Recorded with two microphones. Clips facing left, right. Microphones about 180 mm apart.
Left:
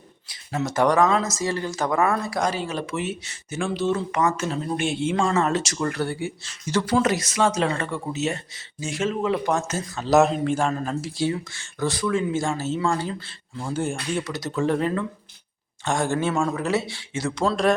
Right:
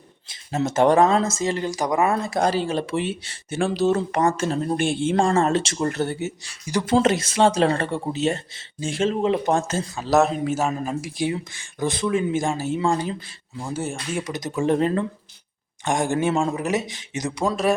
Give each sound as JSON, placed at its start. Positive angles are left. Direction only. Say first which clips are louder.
{"t": 0.3, "sound": "speech", "louder": "right 3 dB", "side_deg": -25}
{"t": 4.4, "sound": "speech", "louder": "right 3 dB", "side_deg": -45}
{"t": 5.4, "sound": "speech", "louder": "right 2 dB", "side_deg": -30}
{"t": 6.9, "sound": "speech", "louder": "right 4 dB", "side_deg": -25}
{"t": 10.1, "sound": "speech", "louder": "left 1 dB", "side_deg": 0}
{"t": 14.8, "sound": "speech", "louder": "right 3 dB", "side_deg": -30}
{"t": 15.8, "sound": "speech", "louder": "right 2 dB", "side_deg": -15}